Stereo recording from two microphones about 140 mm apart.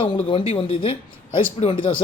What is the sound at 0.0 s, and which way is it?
Speech, 35° left (ahead or behind).